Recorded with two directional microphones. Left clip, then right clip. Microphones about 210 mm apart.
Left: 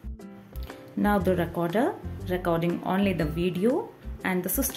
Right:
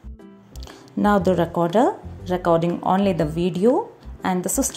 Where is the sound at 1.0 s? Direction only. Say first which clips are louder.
Right 6 dB; 25° right (ahead or behind).